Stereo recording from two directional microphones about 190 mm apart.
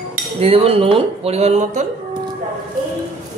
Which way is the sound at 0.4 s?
30° right (ahead or behind).